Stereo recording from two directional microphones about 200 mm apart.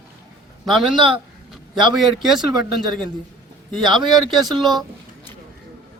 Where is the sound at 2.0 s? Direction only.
Centre (ahead or behind).